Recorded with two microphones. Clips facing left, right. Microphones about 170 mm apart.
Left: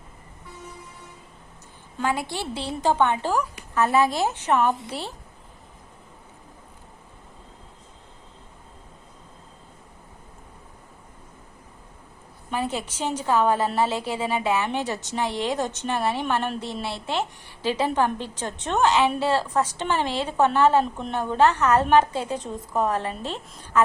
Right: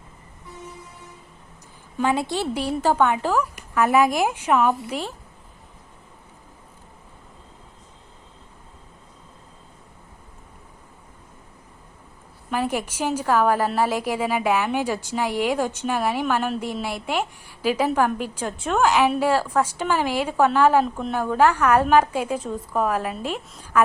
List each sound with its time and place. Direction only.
2.0 s speech: 20° right (ahead or behind)
12.5 s speech: 10° right (ahead or behind)